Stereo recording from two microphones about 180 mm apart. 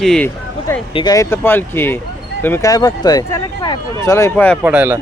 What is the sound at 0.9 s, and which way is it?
Speech, 20° left (ahead or behind).